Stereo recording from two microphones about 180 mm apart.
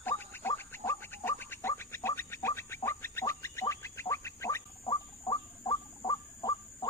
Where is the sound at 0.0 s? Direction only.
10° left (ahead or behind).